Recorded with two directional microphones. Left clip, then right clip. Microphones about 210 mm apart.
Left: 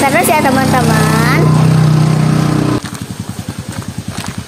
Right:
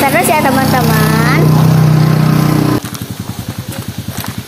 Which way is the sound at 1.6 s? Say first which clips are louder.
Right 1 dB; 25° right (ahead or behind).